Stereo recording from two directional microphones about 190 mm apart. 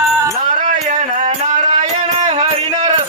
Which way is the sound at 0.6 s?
35° right (ahead or behind).